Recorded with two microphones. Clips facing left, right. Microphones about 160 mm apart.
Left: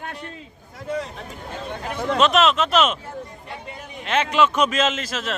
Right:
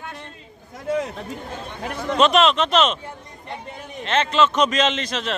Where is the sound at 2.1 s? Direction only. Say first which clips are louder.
Right 1 dB; centre (ahead or behind).